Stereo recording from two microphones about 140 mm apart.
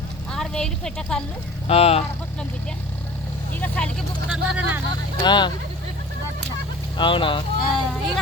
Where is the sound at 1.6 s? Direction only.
45° left (ahead or behind).